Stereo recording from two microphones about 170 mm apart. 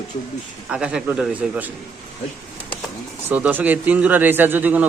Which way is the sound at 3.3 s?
10° right (ahead or behind).